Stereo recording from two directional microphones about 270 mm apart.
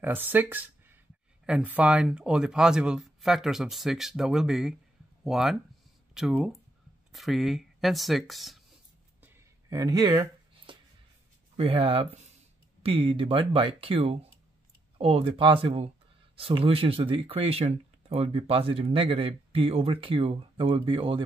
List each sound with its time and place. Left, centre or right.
0.0 s speech: centre
9.2 s a sound: centre
10.7 s music: centre
11.5 s speech: right